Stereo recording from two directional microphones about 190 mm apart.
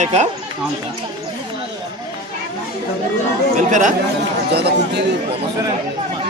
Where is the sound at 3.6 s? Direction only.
40° right (ahead or behind).